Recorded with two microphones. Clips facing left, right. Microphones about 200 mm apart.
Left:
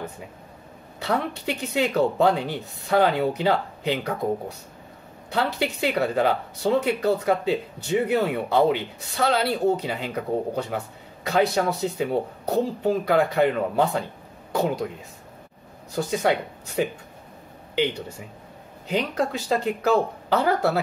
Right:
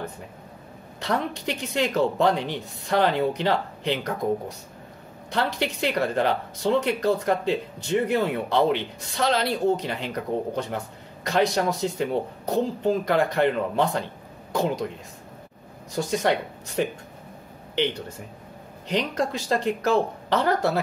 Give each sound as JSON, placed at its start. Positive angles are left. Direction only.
{"t": 0.9, "sound": "speech", "side_deg": 5}
{"t": 5.3, "sound": "speech", "side_deg": 5}
{"t": 15.9, "sound": "speech", "side_deg": 5}
{"t": 18.9, "sound": "speech", "side_deg": 5}